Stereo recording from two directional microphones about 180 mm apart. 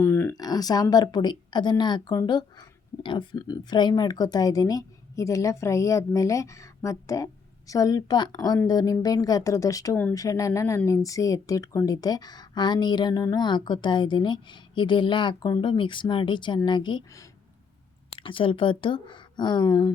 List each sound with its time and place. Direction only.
0.0 s a woman's voice: 15° left (ahead or behind)